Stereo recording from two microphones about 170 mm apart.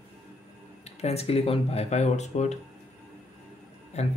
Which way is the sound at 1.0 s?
35° left (ahead or behind).